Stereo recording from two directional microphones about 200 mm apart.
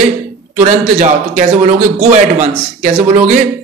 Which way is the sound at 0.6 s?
35° right (ahead or behind).